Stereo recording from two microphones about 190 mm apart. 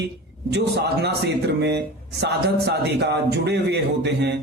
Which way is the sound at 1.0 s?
60° right (ahead or behind).